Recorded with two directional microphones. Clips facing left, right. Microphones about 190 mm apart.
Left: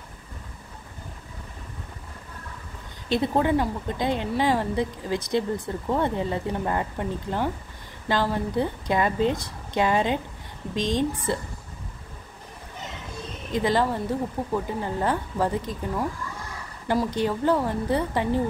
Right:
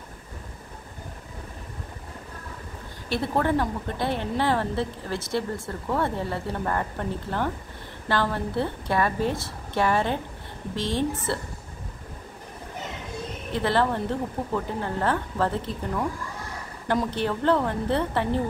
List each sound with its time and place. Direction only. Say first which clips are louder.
3.1 s a woman's voice: left 2 dB; 15° left (ahead or behind)
13.5 s a woman's voice: left 1 dB; 15° left (ahead or behind)